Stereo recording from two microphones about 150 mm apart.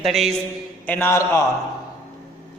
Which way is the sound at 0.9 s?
15° left (ahead or behind).